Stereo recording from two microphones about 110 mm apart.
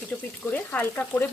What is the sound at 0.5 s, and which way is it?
Frying, 15° left (ahead or behind).